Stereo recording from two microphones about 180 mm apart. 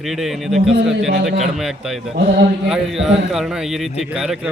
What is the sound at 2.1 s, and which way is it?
Speech, 60° right (ahead or behind).